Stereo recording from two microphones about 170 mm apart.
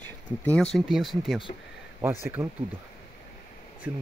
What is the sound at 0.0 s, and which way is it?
Speech, 10° left (ahead or behind).